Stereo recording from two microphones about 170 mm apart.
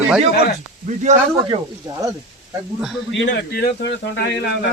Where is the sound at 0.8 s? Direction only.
45° right (ahead or behind).